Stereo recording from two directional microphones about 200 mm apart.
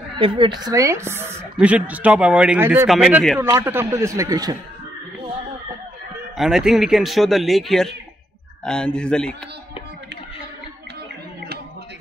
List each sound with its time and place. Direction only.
0.2 s a woman's voice: 25° right (ahead or behind)
6.3 s a man's voice: centre (ahead or behind)